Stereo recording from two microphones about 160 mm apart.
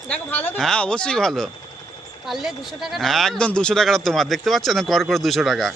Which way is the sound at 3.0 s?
Centre (ahead or behind).